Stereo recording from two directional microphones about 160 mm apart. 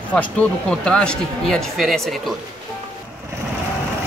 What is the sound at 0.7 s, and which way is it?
Speech, 5° left (ahead or behind).